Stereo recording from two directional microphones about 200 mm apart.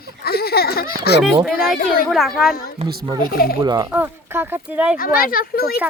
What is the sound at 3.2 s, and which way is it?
Speech, 45° left (ahead or behind).